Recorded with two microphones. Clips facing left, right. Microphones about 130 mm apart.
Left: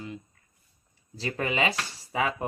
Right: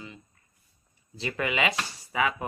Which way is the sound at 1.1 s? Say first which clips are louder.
Even; 35° left (ahead or behind).